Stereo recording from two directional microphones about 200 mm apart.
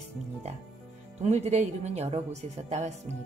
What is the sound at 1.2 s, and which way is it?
Speech, 35° right (ahead or behind).